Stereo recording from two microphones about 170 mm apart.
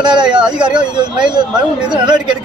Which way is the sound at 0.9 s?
25° right (ahead or behind).